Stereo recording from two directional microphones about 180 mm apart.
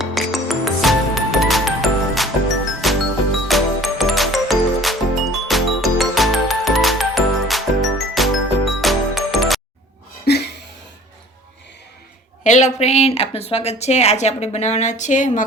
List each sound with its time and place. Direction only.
0.0 s music: centre (ahead or behind)
10.3 s a sound: 65° left (ahead or behind)
12.4 s speech: 40° left (ahead or behind)